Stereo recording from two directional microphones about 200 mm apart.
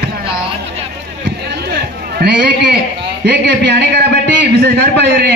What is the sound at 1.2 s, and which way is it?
Run, 55° right (ahead or behind).